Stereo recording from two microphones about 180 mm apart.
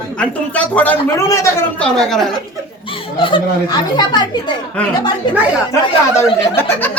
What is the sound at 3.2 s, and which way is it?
Speech, 25° left (ahead or behind).